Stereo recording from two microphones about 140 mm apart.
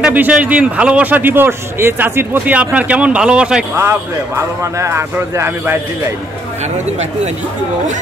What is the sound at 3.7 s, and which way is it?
A man's voice, 20° right (ahead or behind).